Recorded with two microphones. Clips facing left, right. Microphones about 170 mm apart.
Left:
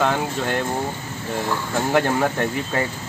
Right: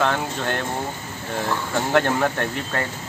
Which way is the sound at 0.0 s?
5° left (ahead or behind).